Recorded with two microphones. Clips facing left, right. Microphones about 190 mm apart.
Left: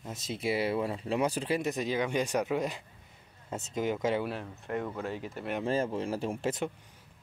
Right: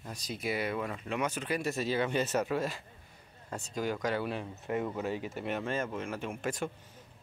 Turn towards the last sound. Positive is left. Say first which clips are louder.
# left 3 dB
turn(degrees=25)  # may be behind; listen again after turning